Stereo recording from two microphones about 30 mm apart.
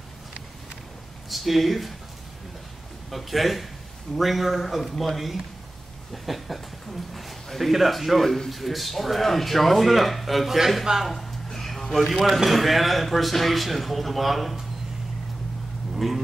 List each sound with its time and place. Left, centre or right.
1.3 s speech: centre
3.1 s speech: centre
11.1 s a sound: centre
12.0 s speech: centre
15.9 s speech: centre